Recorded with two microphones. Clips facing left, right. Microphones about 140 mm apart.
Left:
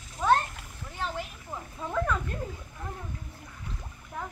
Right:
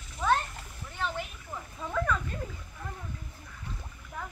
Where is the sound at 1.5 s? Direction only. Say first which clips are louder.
Left 2 dB; 15° left (ahead or behind).